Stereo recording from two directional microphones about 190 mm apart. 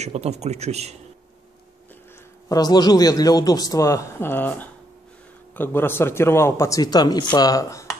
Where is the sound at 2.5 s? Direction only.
20° left (ahead or behind).